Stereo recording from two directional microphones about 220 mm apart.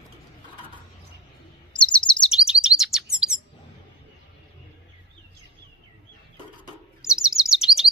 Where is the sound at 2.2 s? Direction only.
5° right (ahead or behind).